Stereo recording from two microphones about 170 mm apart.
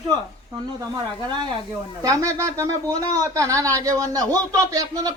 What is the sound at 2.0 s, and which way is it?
A man's voice, 20° right (ahead or behind).